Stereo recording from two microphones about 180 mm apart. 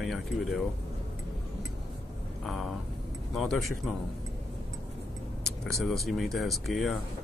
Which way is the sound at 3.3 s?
Centre (ahead or behind).